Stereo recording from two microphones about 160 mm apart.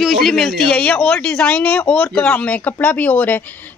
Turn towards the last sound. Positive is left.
turn(degrees=10)  # may be behind; listen again after turning